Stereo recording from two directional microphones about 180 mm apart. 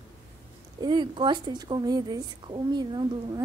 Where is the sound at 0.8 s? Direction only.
25° right (ahead or behind).